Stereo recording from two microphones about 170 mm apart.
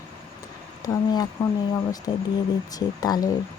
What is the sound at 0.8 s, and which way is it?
Speech, 20° left (ahead or behind).